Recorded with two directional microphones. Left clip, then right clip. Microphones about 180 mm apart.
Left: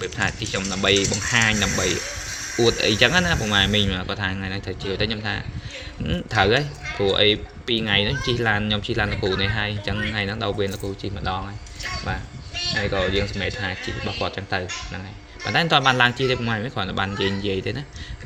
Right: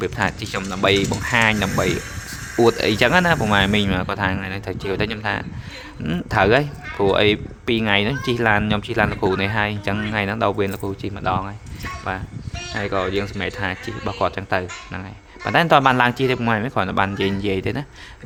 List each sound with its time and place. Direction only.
0.0 s speech: 35° right (ahead or behind)